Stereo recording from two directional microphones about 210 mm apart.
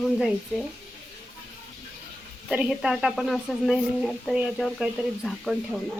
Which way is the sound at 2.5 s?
5° right (ahead or behind).